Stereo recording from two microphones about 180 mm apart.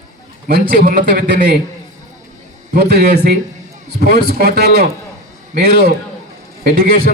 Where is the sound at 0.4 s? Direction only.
55° right (ahead or behind).